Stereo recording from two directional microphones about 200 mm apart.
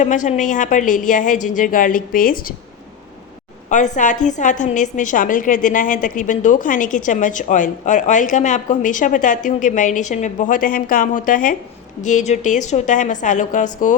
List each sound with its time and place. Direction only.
0.0 s a woman's voice: 35° left (ahead or behind)
3.7 s a woman's voice: 40° left (ahead or behind)